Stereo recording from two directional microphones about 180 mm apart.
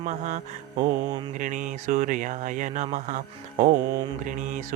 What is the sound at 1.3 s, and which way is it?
Speech, 45° right (ahead or behind).